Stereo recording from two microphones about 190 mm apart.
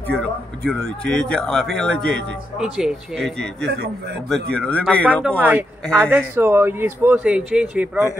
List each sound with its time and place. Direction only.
0.1 s a man's voice: 5° left (ahead or behind)
5.4 s speech: 10° right (ahead or behind)